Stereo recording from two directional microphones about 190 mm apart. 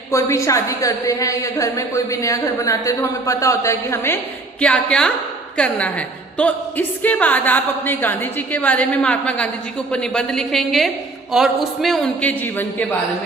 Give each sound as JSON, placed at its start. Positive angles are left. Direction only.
{"t": 0.1, "sound": "a woman's voice", "side_deg": 15}